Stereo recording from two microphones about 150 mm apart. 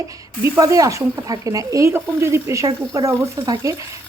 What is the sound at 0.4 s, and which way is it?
Speech, 20° right (ahead or behind).